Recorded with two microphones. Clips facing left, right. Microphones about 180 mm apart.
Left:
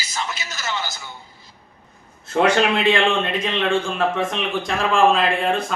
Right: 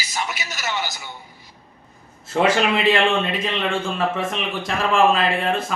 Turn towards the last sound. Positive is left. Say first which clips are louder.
# left 1 dB
turn(degrees=0)  # may be behind; listen again after turning